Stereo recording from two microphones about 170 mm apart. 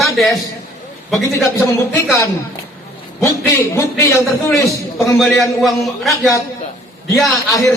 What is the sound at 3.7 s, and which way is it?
Speech, 15° left (ahead or behind).